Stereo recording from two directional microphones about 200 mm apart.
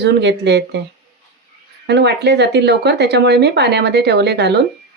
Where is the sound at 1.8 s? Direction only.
55° right (ahead or behind).